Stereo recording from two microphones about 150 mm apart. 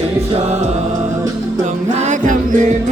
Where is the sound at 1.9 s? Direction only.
55° right (ahead or behind).